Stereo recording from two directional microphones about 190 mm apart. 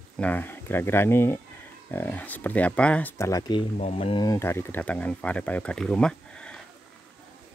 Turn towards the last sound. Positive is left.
turn(degrees=5)  # may be behind; listen again after turning